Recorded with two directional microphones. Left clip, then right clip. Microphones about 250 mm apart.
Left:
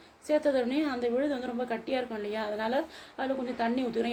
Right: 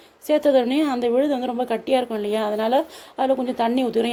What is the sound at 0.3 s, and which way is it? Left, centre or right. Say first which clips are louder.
A woman's voice: right 9 dB; right.